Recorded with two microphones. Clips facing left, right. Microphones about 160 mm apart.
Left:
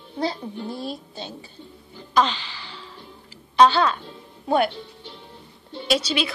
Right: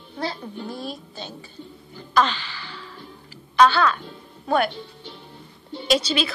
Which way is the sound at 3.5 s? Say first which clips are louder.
Left 1 dB; 25° left (ahead or behind).